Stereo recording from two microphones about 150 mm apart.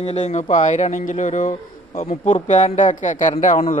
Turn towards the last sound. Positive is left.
turn(degrees=50)  # may be behind; listen again after turning